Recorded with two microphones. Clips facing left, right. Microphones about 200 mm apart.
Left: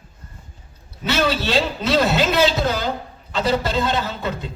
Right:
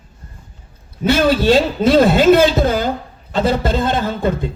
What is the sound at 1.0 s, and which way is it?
A man's voice, 50° right (ahead or behind).